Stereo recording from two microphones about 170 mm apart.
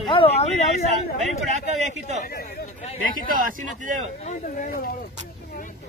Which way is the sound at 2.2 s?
55° left (ahead or behind).